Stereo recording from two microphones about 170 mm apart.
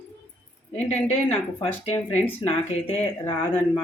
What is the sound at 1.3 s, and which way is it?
Speech, 35° left (ahead or behind).